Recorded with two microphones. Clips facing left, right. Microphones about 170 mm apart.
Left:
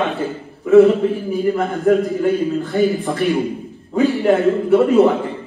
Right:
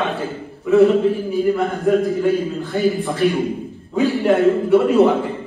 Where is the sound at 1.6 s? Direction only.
Centre (ahead or behind).